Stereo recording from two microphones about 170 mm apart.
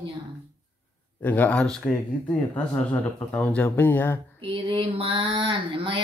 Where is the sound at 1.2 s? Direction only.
10° left (ahead or behind).